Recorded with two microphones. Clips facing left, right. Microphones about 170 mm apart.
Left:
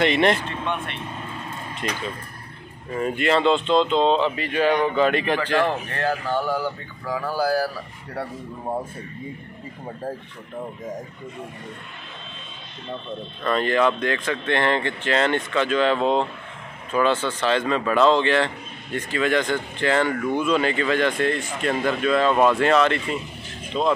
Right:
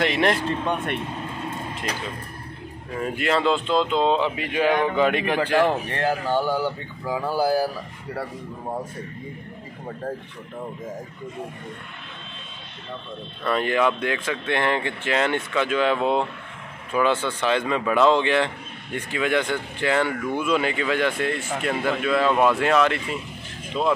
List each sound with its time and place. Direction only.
0.0 s speech: centre (ahead or behind)
0.5 s speech: 40° right (ahead or behind)
3.0 s speech: centre (ahead or behind); by 7.7 s 20° right (ahead or behind)
13.4 s speech: 10° right (ahead or behind)